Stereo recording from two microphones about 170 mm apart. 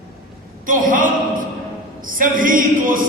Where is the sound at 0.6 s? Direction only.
50° right (ahead or behind).